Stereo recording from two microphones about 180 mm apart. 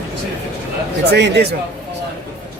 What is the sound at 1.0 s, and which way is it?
Speech, 70° right (ahead or behind).